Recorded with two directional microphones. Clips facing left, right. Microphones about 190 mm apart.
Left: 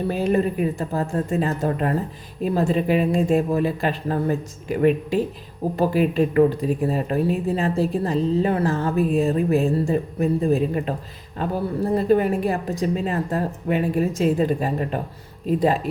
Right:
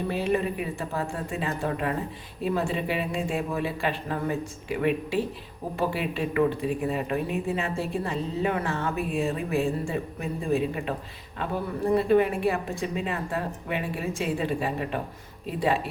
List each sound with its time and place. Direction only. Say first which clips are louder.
0.1 s speech: left 5 dB; 40° left (ahead or behind)